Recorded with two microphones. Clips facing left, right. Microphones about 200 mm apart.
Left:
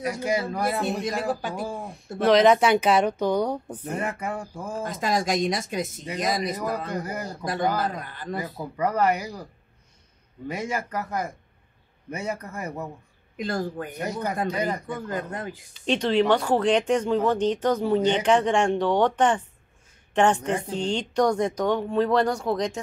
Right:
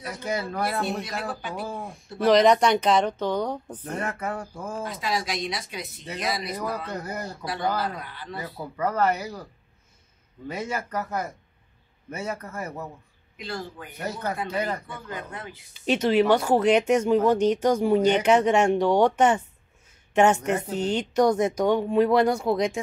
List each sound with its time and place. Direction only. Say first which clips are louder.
0.1 s speech: even; 10° left (ahead or behind)
1.2 s speech: left 4 dB; 45° left (ahead or behind)
2.2 s speech: even; centre (ahead or behind)
4.8 s speech: left 5 dB; 45° left (ahead or behind)
6.9 s speech: left 2 dB; 10° left (ahead or behind)
7.7 s speech: left 1 dB; 45° left (ahead or behind)
8.4 s speech: left 1 dB; 10° left (ahead or behind)
10.5 s speech: left 1 dB; 10° left (ahead or behind)
13.4 s speech: left 7 dB; 50° left (ahead or behind)
13.9 s speech: even; 15° left (ahead or behind)
14.9 s speech: left 6 dB; 45° left (ahead or behind)
15.7 s speech: right 1 dB; 5° right (ahead or behind)